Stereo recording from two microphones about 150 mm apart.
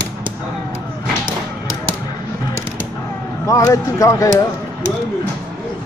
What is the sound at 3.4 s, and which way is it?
Speech, 20° left (ahead or behind).